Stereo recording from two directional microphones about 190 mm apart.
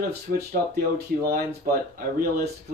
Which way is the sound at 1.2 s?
50° right (ahead or behind).